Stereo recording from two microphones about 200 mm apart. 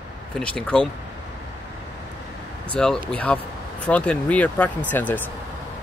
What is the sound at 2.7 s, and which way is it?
Speech, 5° left (ahead or behind).